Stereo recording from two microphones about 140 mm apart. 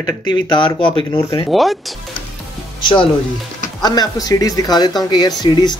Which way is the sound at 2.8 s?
35° left (ahead or behind).